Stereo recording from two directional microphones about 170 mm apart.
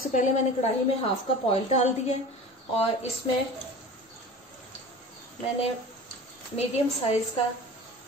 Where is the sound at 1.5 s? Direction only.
40° left (ahead or behind).